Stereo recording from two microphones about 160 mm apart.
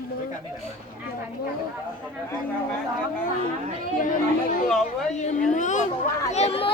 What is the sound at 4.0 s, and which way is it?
Chatter, 55° left (ahead or behind).